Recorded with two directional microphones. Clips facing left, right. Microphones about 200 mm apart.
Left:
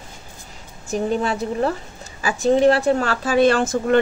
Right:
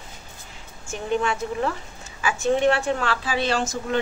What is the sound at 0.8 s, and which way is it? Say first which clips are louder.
A woman's voice: left 3 dB; 35° left (ahead or behind).